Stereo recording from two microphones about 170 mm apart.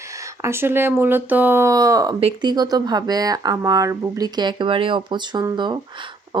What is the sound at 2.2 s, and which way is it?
Speech, 30° right (ahead or behind).